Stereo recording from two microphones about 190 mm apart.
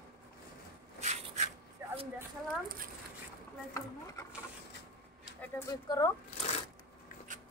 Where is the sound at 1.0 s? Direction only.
35° right (ahead or behind).